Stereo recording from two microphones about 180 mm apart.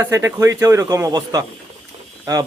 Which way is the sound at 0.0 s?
15° right (ahead or behind).